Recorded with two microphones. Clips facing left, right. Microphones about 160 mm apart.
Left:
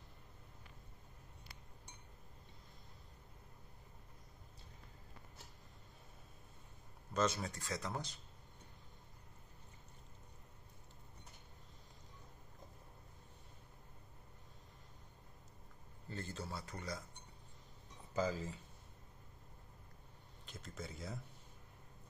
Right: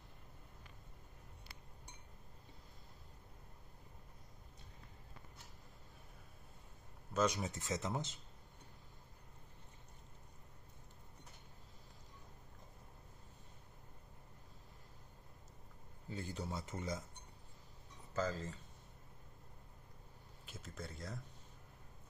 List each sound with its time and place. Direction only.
7.2 s speech: 15° right (ahead or behind)
16.1 s a sound: 10° right (ahead or behind)
18.1 s speech: 10° left (ahead or behind)
20.4 s speech: 5° right (ahead or behind)